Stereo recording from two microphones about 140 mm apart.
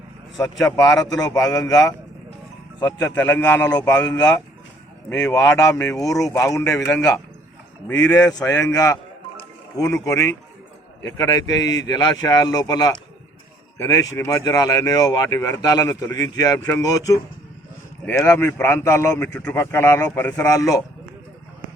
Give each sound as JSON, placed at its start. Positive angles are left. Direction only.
{"t": 0.6, "sound": "speech", "side_deg": 25}
{"t": 3.7, "sound": "speech", "side_deg": 30}
{"t": 7.9, "sound": "speech", "side_deg": 25}
{"t": 18.2, "sound": "speech", "side_deg": 15}